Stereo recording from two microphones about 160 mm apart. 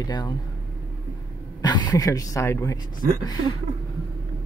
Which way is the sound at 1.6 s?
25° left (ahead or behind).